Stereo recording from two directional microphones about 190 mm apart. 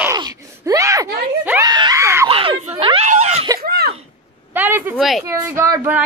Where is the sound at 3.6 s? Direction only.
55° right (ahead or behind).